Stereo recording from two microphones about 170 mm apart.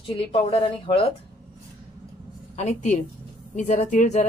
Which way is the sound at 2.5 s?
45° left (ahead or behind).